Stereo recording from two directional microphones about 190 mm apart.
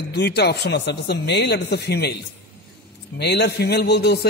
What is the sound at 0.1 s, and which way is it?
A man's voice, 60° left (ahead or behind).